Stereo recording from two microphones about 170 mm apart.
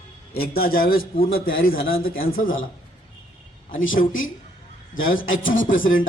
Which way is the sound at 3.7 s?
50° left (ahead or behind).